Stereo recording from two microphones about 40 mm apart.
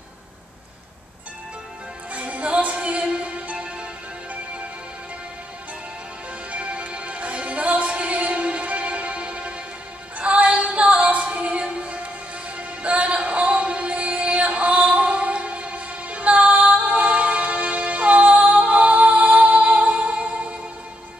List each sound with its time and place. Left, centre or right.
2.1 s music: right
6.5 s music: right
12.5 s music: right